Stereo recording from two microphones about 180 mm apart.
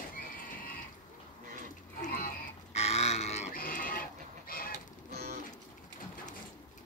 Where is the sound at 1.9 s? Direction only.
40° left (ahead or behind).